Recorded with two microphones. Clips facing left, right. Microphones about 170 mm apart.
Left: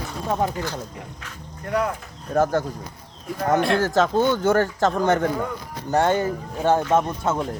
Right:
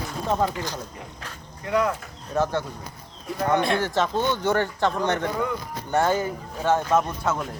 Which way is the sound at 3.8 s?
45° left (ahead or behind).